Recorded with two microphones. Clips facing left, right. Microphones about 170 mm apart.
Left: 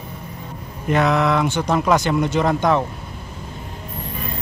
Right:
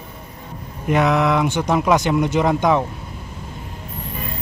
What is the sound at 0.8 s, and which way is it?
Speech, 10° right (ahead or behind).